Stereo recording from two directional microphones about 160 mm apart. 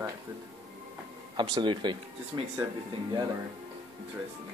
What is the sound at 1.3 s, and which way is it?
Speech, 25° right (ahead or behind).